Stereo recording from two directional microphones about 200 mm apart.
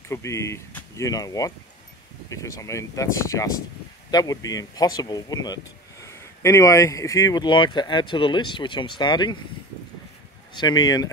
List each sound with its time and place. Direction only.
0.1 s speech: 15° left (ahead or behind)
10.5 s speech: 20° left (ahead or behind)